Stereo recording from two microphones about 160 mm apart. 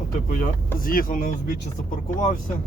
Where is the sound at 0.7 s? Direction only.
60° left (ahead or behind).